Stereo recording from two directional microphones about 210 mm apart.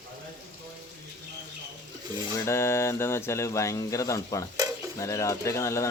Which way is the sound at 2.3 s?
15° left (ahead or behind).